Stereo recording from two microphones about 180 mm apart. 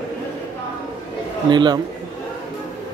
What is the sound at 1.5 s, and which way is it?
Speech, 25° right (ahead or behind).